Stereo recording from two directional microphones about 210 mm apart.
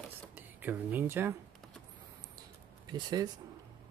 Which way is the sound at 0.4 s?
10° right (ahead or behind).